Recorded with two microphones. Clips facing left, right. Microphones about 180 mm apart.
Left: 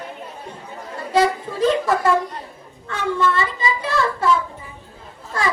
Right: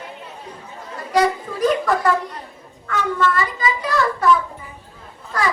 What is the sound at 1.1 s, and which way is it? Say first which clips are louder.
Music: even; 25° left (ahead or behind).